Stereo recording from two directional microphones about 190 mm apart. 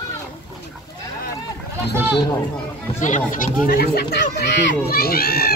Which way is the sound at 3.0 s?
40° left (ahead or behind).